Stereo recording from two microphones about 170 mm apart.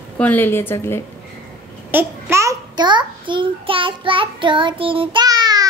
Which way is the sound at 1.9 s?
15° right (ahead or behind).